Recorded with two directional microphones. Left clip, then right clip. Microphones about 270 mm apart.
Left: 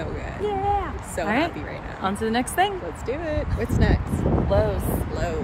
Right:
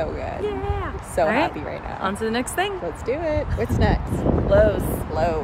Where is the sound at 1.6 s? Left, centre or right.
Centre.